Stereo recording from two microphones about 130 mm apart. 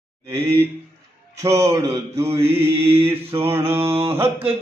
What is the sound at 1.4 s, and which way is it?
Mantra, 25° right (ahead or behind).